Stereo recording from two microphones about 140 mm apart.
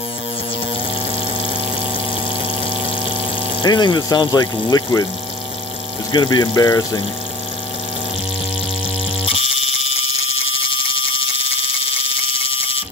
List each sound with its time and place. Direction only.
3.6 s speech: 30° left (ahead or behind)
6.1 s speech: 30° left (ahead or behind)